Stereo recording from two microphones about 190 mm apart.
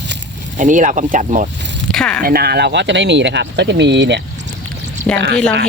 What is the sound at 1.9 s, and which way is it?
Speech, 5° left (ahead or behind).